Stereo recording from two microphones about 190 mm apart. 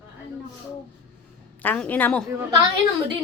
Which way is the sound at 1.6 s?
10° left (ahead or behind).